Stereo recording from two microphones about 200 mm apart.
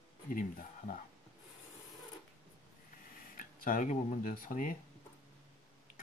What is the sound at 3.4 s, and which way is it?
Speech, 40° left (ahead or behind).